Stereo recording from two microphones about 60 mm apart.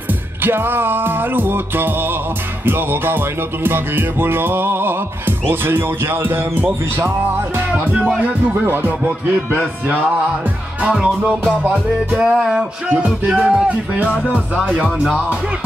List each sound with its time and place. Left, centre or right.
0.4 s music: right
7.7 s music: centre
8.6 s music: right
10.8 s speech: centre
12.1 s music: centre; by 14.7 s right